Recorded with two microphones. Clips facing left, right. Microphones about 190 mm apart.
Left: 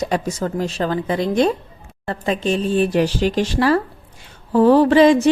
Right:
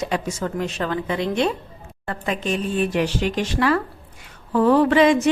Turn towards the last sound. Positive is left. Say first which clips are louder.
# left 4 dB
turn(degrees=35)  # may be behind; listen again after turning